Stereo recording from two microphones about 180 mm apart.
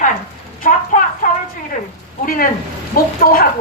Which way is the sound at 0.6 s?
50° left (ahead or behind).